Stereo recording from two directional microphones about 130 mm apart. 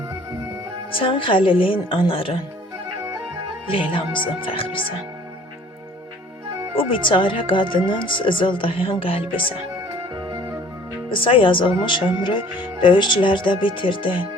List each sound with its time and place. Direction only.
0.9 s a woman's voice: 40° left (ahead or behind)
3.7 s a woman's voice: 45° left (ahead or behind)
6.7 s speech: 40° left (ahead or behind)
10.2 s music: 30° right (ahead or behind)
11.1 s speech: 45° left (ahead or behind)